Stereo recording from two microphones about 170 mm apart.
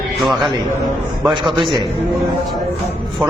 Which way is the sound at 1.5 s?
25° right (ahead or behind).